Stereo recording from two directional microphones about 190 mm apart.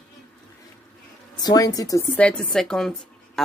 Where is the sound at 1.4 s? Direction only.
20° left (ahead or behind).